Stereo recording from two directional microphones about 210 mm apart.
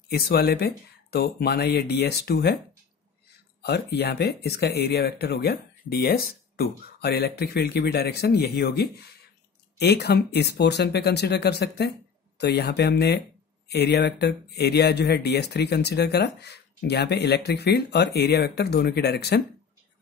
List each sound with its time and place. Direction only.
0.1 s speech: 50° left (ahead or behind)
3.6 s speech: 50° left (ahead or behind)